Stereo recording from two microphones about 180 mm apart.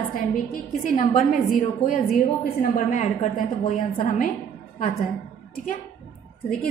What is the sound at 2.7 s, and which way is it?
A woman's voice, 40° left (ahead or behind).